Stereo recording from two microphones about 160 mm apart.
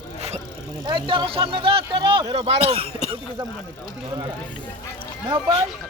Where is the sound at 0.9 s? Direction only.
30° right (ahead or behind).